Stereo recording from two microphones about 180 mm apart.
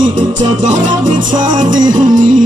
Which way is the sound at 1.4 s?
45° right (ahead or behind).